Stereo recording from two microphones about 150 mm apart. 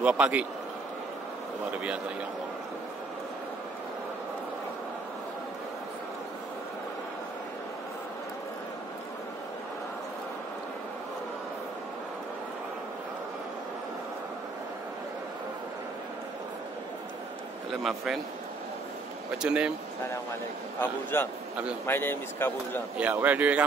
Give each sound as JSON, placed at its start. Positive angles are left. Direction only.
{"t": 0.0, "sound": "a man's voice", "side_deg": -5}
{"t": 17.8, "sound": "a man's voice", "side_deg": 0}
{"t": 19.3, "sound": "a man's voice", "side_deg": -5}
{"t": 21.1, "sound": "speech", "side_deg": 15}
{"t": 22.9, "sound": "a man's voice", "side_deg": -10}